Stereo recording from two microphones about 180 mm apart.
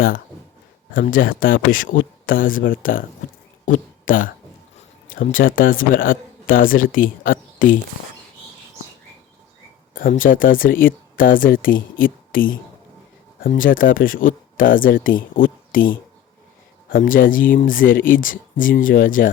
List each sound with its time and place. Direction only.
0.9 s speech: 50° left (ahead or behind)
3.7 s a sound: 50° left (ahead or behind)
5.0 s speech: 50° left (ahead or behind)
9.9 s speech: 50° left (ahead or behind)